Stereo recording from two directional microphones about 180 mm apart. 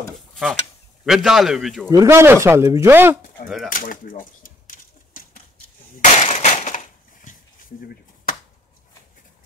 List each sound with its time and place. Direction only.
0.3 s a sound: centre (ahead or behind)
1.0 s a man's voice: centre (ahead or behind)
1.9 s speech: 15° right (ahead or behind)
3.4 s speech: centre (ahead or behind)
3.7 s a sound: 50° left (ahead or behind)
5.9 s glass: 40° left (ahead or behind)